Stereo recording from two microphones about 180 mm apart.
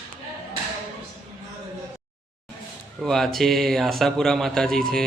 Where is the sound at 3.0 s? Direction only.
Centre (ahead or behind).